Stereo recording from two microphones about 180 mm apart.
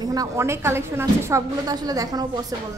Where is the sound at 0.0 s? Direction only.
20° right (ahead or behind).